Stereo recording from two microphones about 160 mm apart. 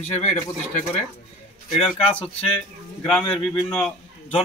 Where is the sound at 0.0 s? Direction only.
45° left (ahead or behind).